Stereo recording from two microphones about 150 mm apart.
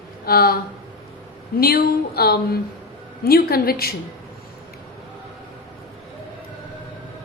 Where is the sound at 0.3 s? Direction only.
90° left.